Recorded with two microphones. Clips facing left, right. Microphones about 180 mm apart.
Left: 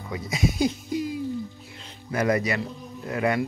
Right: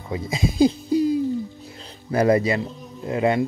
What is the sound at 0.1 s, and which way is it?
Speech, 30° right (ahead or behind).